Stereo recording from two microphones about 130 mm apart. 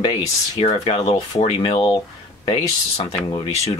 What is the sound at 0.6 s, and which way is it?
Speech, 45° left (ahead or behind).